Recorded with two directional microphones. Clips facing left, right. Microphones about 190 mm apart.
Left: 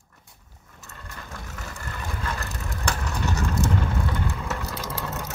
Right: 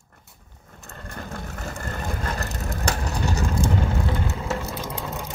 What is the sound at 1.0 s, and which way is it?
Vehicle, 50° right (ahead or behind).